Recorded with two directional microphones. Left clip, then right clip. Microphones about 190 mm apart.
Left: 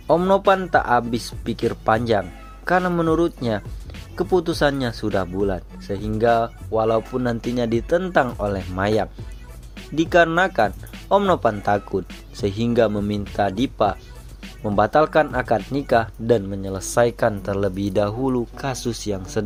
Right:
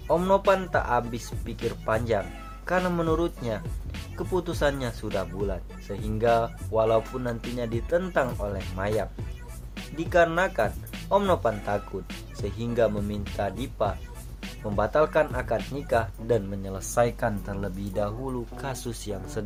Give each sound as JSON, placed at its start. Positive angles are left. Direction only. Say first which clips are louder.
{"t": 0.1, "sound": "speech", "louder": "left 5 dB", "side_deg": 35}